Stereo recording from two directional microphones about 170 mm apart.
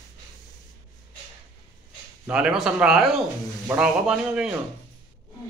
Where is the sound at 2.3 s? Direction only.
5° right (ahead or behind).